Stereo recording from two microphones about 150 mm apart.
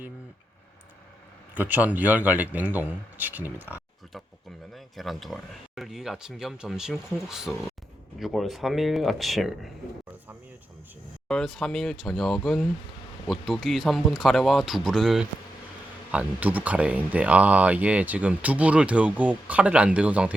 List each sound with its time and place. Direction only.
1.5 s speech: 10° right (ahead or behind)
4.7 s speech: centre (ahead or behind)
11.3 s speech: centre (ahead or behind)